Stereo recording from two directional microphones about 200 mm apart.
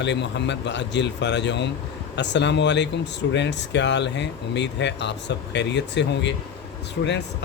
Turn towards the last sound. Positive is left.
turn(degrees=55)  # may be behind; listen again after turning